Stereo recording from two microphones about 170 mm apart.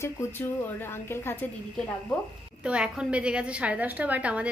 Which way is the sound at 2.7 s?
5° right (ahead or behind).